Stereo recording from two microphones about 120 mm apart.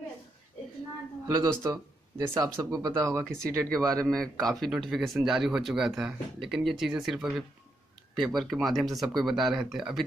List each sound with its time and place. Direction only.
1.2 s speech: 30° right (ahead or behind)
3.9 s speech: 5° left (ahead or behind)